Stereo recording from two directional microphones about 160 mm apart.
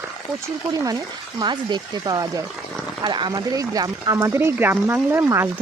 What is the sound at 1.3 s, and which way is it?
Speech, 25° right (ahead or behind).